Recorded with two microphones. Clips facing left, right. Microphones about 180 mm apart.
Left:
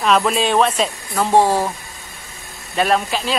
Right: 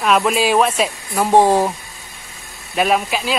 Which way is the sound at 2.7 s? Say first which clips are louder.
Right 1 dB; 5° right (ahead or behind).